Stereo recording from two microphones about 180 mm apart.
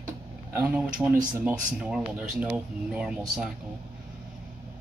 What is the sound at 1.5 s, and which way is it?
Speech, 5° right (ahead or behind).